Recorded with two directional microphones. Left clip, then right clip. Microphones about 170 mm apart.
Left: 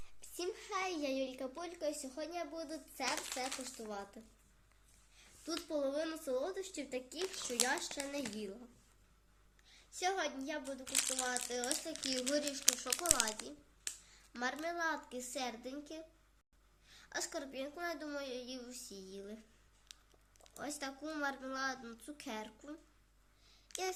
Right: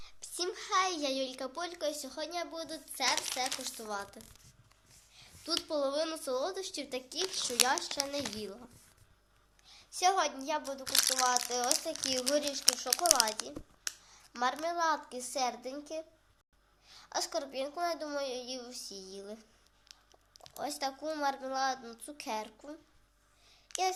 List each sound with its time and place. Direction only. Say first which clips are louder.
0.2 s a woman's voice: right 5 dB; 5° left (ahead or behind)
5.1 s a sound: right 7 dB; 15° left (ahead or behind)
5.6 s speech: right 4 dB; 10° left (ahead or behind)
7.2 s speech: right 9 dB; 15° right (ahead or behind)
7.9 s speech: right 6 dB; 10° left (ahead or behind)
9.6 s a child's voice: right 9 dB; 20° left (ahead or behind)
10.8 s speech: right 9 dB; 15° right (ahead or behind)
11.3 s a woman's voice: right 8 dB; 20° left (ahead or behind)
14.1 s a woman's voice: right 8 dB; 25° left (ahead or behind)
19.9 s a sound: right 1 dB; 25° left (ahead or behind)
20.4 s a woman's voice: right 8 dB; 25° left (ahead or behind)